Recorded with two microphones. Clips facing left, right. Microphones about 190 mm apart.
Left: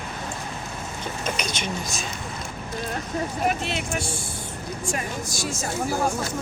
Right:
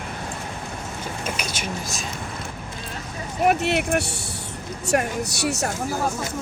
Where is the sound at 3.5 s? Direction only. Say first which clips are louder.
Right 6 dB; 60° right (ahead or behind).